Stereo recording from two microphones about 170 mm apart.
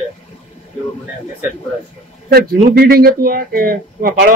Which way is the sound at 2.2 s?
65° right (ahead or behind).